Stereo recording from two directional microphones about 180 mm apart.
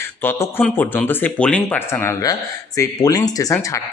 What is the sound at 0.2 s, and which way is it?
A man's voice, 10° left (ahead or behind).